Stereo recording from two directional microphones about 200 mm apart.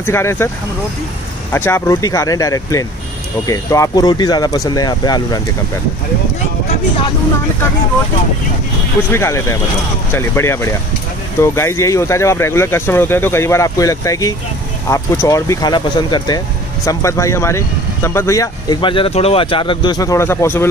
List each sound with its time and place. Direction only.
0.0 s speech: 10° left (ahead or behind)
1.5 s speech: 10° left (ahead or behind)
9.1 s speech: 15° left (ahead or behind)